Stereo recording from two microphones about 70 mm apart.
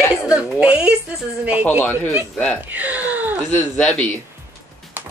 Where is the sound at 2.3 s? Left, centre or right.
Centre.